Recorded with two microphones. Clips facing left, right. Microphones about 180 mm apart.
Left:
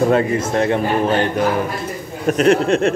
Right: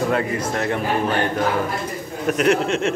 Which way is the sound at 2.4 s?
35° left (ahead or behind).